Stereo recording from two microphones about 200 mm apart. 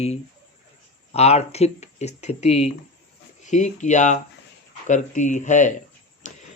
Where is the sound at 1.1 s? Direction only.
30° left (ahead or behind).